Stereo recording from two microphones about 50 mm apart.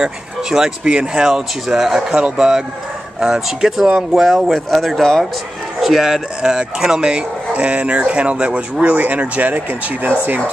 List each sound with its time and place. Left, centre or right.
0.0 s speech: centre
1.2 s speech: centre
5.8 s speech: centre; by 10.1 s right